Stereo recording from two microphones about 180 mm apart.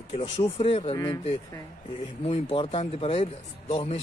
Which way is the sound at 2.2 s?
35° left (ahead or behind).